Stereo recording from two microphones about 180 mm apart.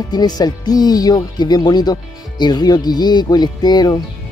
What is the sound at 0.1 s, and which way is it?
Speech, 20° left (ahead or behind).